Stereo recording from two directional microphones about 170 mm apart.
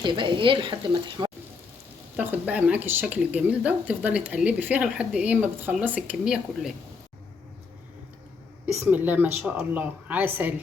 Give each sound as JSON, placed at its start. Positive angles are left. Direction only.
{"t": 0.0, "sound": "a woman's voice", "side_deg": -30}
{"t": 2.1, "sound": "speech", "side_deg": -10}
{"t": 8.6, "sound": "speech", "side_deg": -10}